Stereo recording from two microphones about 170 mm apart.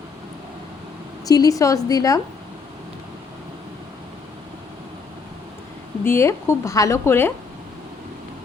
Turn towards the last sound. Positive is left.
turn(degrees=15)  # may be behind; listen again after turning